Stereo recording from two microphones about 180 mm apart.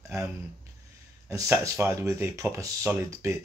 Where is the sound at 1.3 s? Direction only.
15° right (ahead or behind).